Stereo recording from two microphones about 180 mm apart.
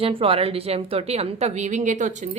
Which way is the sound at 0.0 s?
30° right (ahead or behind).